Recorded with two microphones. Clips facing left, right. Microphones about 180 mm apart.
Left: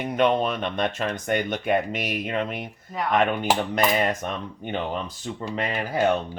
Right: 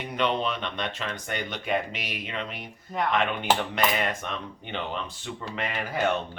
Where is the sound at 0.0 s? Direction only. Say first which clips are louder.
Left 5 dB; 50° left (ahead or behind).